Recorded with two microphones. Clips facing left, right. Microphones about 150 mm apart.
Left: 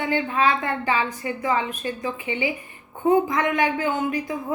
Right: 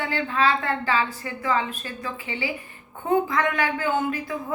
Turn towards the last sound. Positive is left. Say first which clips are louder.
# left 1 dB
turn(degrees=20)  # may be behind; listen again after turning